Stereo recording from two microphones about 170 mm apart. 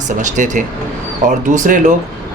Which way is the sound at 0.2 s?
45° right (ahead or behind).